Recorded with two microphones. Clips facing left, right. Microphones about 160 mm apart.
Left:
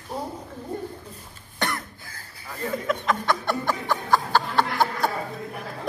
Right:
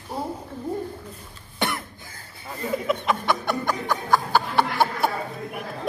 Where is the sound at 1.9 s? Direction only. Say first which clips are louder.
Right 1 dB; 20° right (ahead or behind).